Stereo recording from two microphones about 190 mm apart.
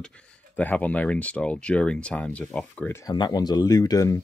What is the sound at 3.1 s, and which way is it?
Speech, 20° left (ahead or behind).